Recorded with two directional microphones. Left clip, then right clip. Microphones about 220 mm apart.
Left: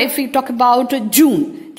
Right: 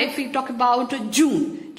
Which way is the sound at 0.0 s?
40° left (ahead or behind).